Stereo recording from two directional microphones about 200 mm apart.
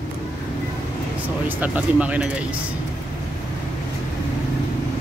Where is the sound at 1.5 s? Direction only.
5° right (ahead or behind).